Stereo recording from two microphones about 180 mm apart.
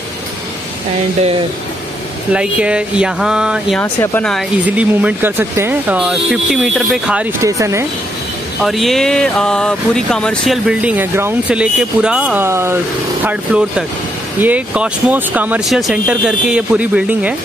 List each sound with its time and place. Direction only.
2.3 s speech: 5° right (ahead or behind)
3.8 s speech: 10° left (ahead or behind)
4.6 s speech: 10° right (ahead or behind)
7.4 s speech: 15° right (ahead or behind)
8.6 s speech: centre (ahead or behind)